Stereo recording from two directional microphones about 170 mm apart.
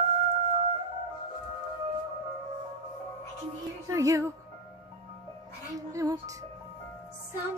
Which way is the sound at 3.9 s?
20° right (ahead or behind).